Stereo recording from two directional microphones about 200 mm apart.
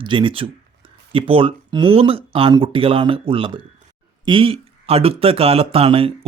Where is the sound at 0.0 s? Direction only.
25° right (ahead or behind).